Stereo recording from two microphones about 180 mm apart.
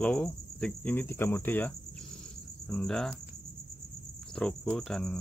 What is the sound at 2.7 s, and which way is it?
Cricket, centre (ahead or behind).